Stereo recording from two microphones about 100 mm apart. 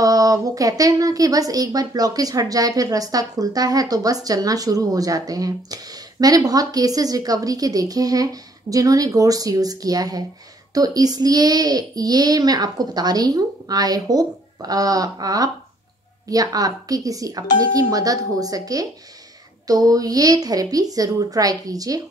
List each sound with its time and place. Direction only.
0.0 s a woman's voice: 35° right (ahead or behind)